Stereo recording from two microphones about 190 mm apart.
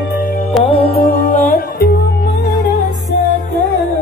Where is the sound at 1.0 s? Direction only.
45° left (ahead or behind).